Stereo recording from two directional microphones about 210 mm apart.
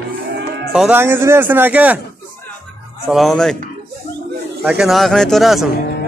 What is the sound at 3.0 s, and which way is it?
Speech, centre (ahead or behind).